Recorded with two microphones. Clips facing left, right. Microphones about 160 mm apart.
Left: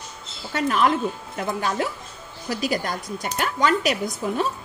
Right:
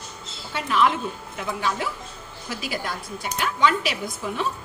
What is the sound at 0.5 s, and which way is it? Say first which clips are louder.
Speech: left 1 dB; 45° left (ahead or behind).